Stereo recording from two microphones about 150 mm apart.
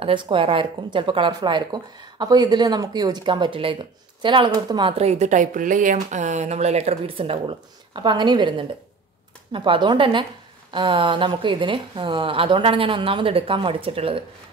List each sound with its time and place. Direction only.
0.0 s a woman's voice: 35° right (ahead or behind)